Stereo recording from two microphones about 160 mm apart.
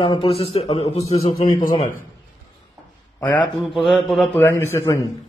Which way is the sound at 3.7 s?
Centre (ahead or behind).